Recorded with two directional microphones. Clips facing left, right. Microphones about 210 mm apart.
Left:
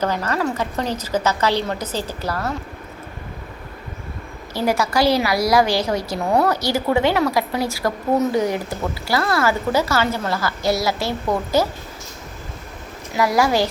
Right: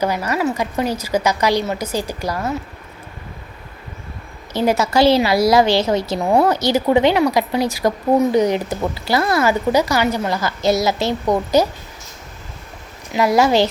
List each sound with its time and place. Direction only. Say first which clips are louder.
0.0 s a woman's voice: right 2 dB; 10° right (ahead or behind)
4.5 s a woman's voice: right 3 dB; 20° right (ahead or behind)
13.1 s a woman's voice: right 3 dB; 20° right (ahead or behind)